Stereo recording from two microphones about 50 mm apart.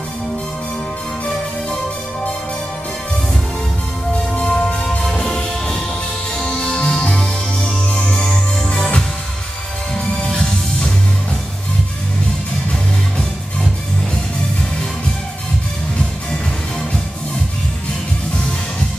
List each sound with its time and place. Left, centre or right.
4.3 s music: centre